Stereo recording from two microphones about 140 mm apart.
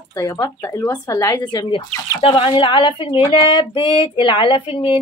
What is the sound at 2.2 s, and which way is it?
Speech, 35° left (ahead or behind).